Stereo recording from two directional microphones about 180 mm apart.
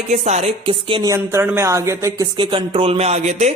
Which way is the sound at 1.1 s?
15° right (ahead or behind).